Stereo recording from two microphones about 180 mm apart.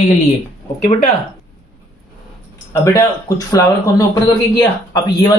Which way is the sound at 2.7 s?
15° left (ahead or behind).